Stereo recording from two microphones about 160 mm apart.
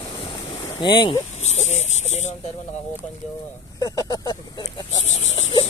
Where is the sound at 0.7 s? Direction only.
30° left (ahead or behind).